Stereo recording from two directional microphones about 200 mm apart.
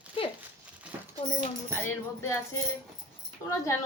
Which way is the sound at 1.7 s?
10° left (ahead or behind).